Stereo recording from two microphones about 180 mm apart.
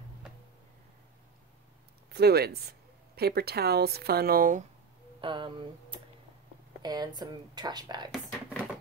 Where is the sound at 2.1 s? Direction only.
60° right (ahead or behind).